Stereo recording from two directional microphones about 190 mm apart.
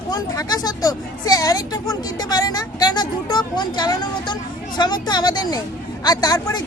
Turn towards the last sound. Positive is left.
turn(degrees=20)  # may be behind; listen again after turning